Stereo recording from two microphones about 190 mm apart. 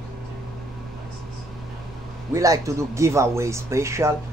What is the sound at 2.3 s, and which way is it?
Speech, 15° right (ahead or behind).